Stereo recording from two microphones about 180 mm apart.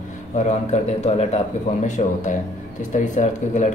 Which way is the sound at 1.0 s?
35° left (ahead or behind).